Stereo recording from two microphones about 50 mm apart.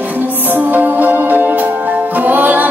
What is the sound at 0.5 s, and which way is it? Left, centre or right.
Music, right.